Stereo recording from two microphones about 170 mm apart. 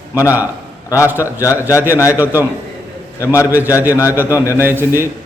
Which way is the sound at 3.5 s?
10° right (ahead or behind).